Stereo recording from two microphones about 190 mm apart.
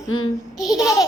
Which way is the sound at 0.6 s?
20° left (ahead or behind).